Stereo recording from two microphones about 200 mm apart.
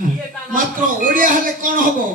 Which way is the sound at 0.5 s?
40° right (ahead or behind).